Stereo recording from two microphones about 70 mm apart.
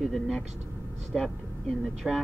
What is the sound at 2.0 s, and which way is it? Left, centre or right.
Speech, centre.